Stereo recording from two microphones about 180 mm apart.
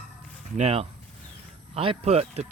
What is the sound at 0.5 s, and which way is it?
Speech, 35° right (ahead or behind).